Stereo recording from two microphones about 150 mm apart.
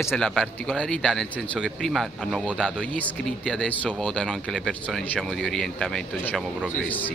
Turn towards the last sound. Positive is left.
turn(degrees=10)  # may be behind; listen again after turning